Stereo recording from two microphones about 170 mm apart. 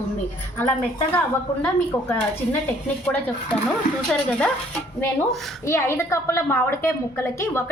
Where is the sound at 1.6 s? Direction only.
10° left (ahead or behind).